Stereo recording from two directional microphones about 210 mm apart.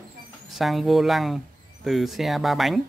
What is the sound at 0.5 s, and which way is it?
Speech, centre (ahead or behind).